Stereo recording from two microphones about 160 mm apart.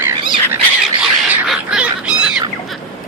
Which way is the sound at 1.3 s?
5° right (ahead or behind).